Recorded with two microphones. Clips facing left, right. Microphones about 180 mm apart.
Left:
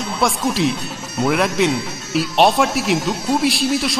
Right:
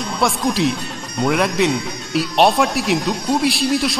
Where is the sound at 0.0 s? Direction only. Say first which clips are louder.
Even; centre (ahead or behind).